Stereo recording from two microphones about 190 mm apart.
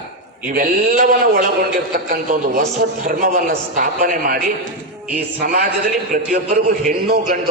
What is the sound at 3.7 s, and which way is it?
A man's voice, 45° right (ahead or behind).